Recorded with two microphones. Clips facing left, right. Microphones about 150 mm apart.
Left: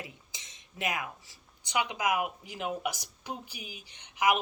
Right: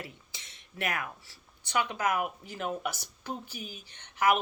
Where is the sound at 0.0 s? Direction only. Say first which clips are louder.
Right 1 dB; 15° left (ahead or behind).